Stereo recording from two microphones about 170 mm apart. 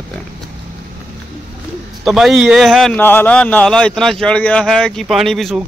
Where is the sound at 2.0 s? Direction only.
Centre (ahead or behind).